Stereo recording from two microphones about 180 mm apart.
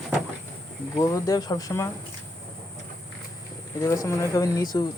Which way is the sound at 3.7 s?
20° left (ahead or behind).